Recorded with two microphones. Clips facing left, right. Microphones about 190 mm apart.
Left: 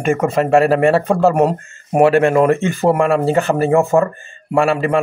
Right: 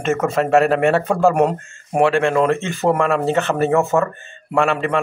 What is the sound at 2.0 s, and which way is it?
Speech, 40° left (ahead or behind).